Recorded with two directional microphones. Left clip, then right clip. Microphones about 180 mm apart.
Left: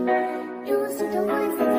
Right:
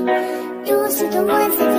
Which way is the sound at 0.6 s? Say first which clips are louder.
Right 7 dB; 50° right (ahead or behind).